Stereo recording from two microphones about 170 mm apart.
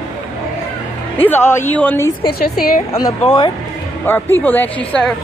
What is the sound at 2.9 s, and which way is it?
Speech, 35° left (ahead or behind).